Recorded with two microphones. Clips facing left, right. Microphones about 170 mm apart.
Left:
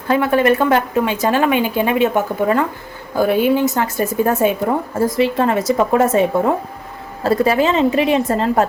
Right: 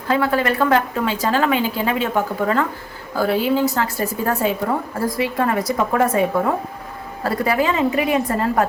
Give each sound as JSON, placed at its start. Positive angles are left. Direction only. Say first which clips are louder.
{"t": 0.1, "sound": "a woman's voice", "louder": "left 4 dB", "side_deg": 25}
{"t": 7.3, "sound": "a woman's voice", "louder": "left 5 dB", "side_deg": 25}